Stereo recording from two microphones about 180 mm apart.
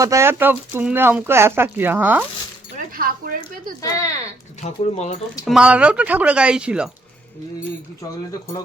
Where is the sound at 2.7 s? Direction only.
55° right (ahead or behind).